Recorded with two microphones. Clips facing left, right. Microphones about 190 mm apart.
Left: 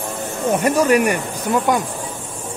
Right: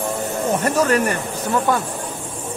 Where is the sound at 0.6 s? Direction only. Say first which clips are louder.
Left 3 dB; 10° left (ahead or behind).